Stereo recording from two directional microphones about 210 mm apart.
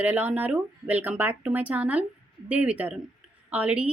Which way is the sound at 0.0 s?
5° right (ahead or behind).